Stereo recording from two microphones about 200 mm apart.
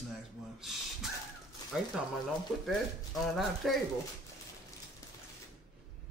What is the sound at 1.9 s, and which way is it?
Speech, 5° right (ahead or behind).